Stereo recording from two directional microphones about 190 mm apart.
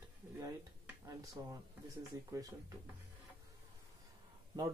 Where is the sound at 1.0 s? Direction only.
20° right (ahead or behind).